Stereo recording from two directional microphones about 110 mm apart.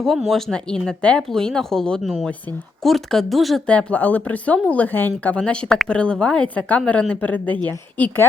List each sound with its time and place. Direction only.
0.0 s speech: centre (ahead or behind)
3.7 s speech: 10° left (ahead or behind)